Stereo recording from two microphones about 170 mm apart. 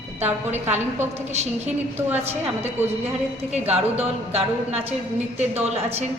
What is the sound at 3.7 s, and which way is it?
Speech, 35° right (ahead or behind).